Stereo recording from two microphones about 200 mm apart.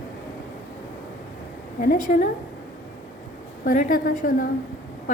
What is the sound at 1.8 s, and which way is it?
Speech, 45° left (ahead or behind).